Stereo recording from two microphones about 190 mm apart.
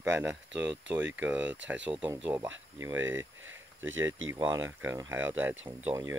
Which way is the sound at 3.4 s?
90° right.